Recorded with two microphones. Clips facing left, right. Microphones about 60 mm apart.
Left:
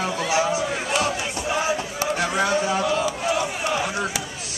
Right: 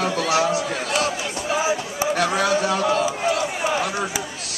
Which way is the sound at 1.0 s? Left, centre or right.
Centre.